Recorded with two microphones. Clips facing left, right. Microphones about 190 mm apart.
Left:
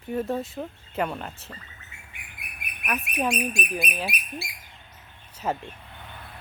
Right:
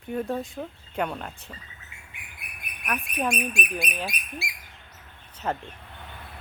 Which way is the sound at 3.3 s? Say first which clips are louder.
Left 1 dB; 35° left (ahead or behind).